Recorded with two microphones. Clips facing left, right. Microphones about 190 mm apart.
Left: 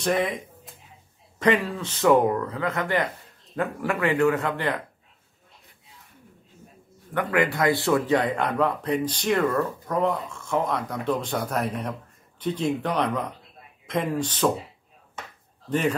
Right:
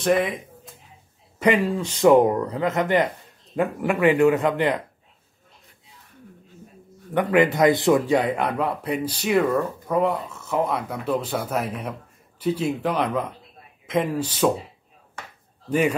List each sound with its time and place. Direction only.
0.0 s speech: centre (ahead or behind)
1.4 s speech: 10° right (ahead or behind)
7.2 s speech: 20° right (ahead or behind)
15.7 s speech: 10° right (ahead or behind)